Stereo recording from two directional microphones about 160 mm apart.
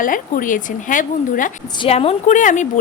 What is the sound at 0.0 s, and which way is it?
A woman's voice, 60° left (ahead or behind).